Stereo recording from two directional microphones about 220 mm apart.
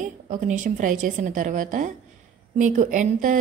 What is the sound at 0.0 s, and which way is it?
Speech, 35° right (ahead or behind).